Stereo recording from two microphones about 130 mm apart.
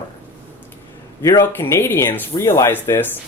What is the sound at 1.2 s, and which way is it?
Speech, 20° left (ahead or behind).